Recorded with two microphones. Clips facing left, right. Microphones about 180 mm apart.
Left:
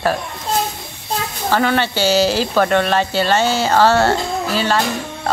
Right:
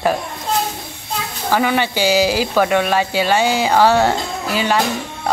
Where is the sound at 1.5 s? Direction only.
10° right (ahead or behind).